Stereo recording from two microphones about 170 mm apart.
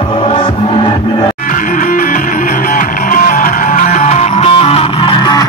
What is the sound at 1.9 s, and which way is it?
Music, 50° left (ahead or behind).